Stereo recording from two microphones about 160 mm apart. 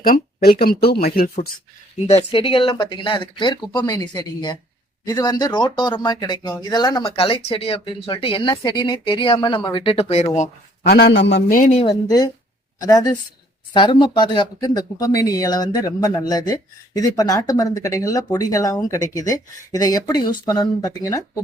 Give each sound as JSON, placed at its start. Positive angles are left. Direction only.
{"t": 0.0, "sound": "speech", "side_deg": 65}
{"t": 2.0, "sound": "speech", "side_deg": 40}
{"t": 10.8, "sound": "a man's voice", "side_deg": 80}
{"t": 11.9, "sound": "speech", "side_deg": 25}